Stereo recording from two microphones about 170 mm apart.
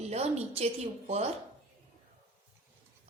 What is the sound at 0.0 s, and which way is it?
A woman's voice, 40° right (ahead or behind).